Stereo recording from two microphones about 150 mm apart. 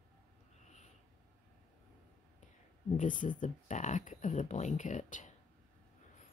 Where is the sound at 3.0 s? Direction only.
60° left (ahead or behind).